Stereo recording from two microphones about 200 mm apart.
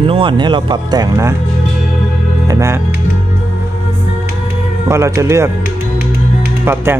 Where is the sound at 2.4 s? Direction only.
15° right (ahead or behind).